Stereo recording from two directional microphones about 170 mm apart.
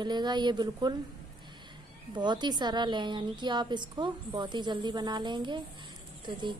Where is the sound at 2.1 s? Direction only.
25° right (ahead or behind).